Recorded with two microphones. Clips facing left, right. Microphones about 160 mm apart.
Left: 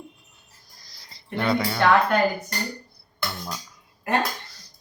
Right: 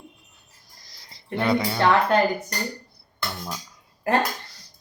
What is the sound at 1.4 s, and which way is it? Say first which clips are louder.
Speech: right 1 dB; 20° right (ahead or behind).